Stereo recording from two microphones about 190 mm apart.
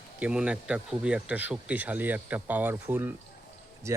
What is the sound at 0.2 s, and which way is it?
Speech, 5° right (ahead or behind).